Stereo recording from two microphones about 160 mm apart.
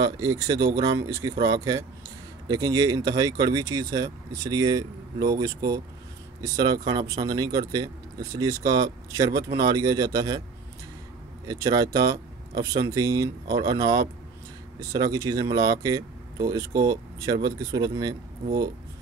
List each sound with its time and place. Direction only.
0.0 s speech: 25° right (ahead or behind)
11.4 s speech: 20° right (ahead or behind)